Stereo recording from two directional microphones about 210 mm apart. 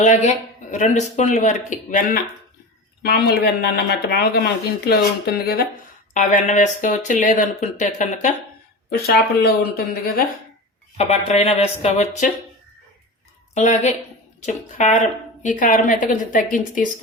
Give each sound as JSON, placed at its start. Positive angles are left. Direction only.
{"t": 0.0, "sound": "speech", "side_deg": 35}
{"t": 6.1, "sound": "speech", "side_deg": 35}
{"t": 8.9, "sound": "speech", "side_deg": 50}
{"t": 10.9, "sound": "speech", "side_deg": 30}
{"t": 13.5, "sound": "a woman's voice", "side_deg": 35}